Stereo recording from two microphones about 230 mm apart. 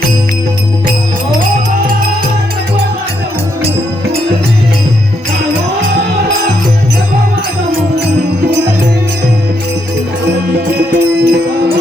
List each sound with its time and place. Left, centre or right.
10.9 s music: right